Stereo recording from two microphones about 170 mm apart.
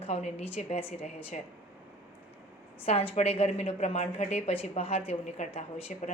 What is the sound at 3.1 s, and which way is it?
A woman's voice, 35° left (ahead or behind).